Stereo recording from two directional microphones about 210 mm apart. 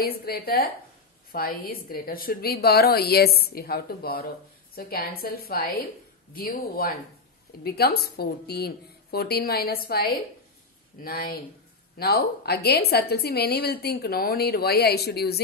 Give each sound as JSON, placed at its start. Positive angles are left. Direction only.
{"t": 0.0, "sound": "a woman's voice", "side_deg": 45}